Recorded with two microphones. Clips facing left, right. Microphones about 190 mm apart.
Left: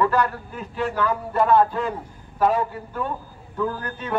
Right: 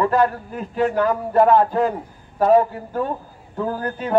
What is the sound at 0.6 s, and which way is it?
A man's voice, 40° right (ahead or behind).